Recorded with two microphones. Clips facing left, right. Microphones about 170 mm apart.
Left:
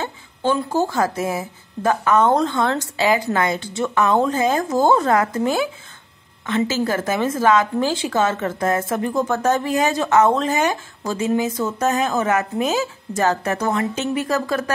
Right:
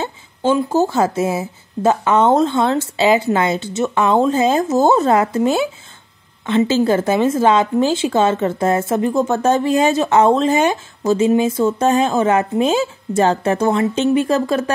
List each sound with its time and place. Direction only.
0.0 s a woman's voice: 20° right (ahead or behind)